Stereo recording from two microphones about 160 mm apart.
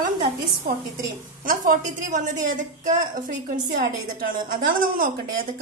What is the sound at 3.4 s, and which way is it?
A woman's voice, 65° right (ahead or behind).